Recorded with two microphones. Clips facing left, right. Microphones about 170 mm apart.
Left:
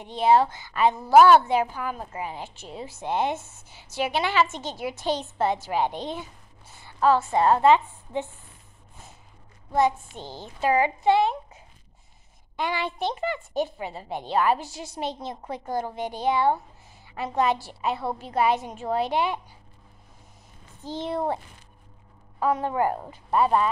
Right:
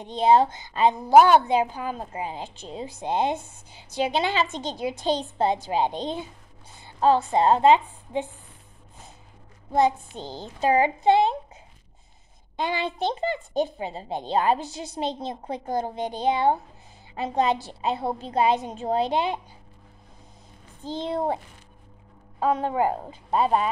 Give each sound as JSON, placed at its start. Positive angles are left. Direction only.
{"t": 0.0, "sound": "a woman's voice", "side_deg": -20}
{"t": 9.7, "sound": "a child's voice", "side_deg": -30}
{"t": 12.5, "sound": "a woman's voice", "side_deg": -25}
{"t": 22.4, "sound": "a woman's voice", "side_deg": -20}